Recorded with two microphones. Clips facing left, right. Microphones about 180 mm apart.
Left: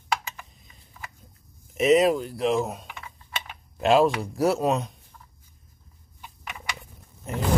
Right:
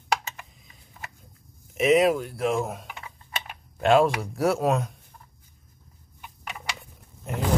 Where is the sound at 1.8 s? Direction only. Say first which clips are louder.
Left 1 dB; centre (ahead or behind).